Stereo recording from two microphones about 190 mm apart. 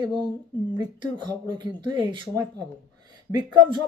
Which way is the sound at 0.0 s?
25° right (ahead or behind).